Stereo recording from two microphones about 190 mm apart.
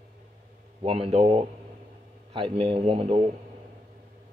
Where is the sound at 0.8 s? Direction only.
30° right (ahead or behind).